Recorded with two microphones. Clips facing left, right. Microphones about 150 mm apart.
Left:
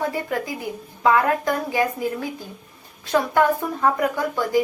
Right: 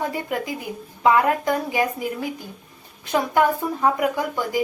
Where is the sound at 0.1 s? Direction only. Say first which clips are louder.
Left 1 dB; 20° right (ahead or behind).